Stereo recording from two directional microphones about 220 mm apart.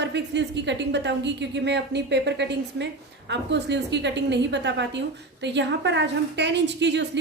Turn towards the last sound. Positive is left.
turn(degrees=-50)  # may be behind; listen again after turning